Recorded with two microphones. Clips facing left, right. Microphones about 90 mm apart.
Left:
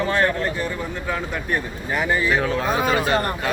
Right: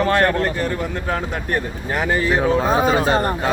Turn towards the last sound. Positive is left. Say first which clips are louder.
# right 3 dB
turn(degrees=-30)  # may be behind; listen again after turning